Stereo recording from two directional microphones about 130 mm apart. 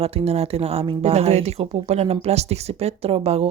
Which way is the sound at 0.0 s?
50° right (ahead or behind).